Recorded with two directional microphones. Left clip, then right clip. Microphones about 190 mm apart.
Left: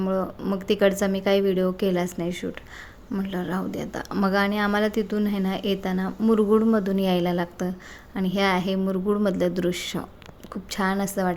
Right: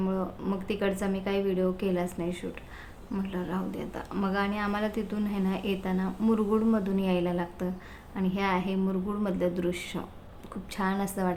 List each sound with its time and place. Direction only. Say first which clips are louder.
0.0 s a woman's voice: left 6 dB; 30° left (ahead or behind)